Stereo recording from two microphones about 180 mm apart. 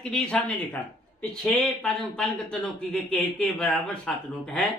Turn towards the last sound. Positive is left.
turn(degrees=5)  # may be behind; listen again after turning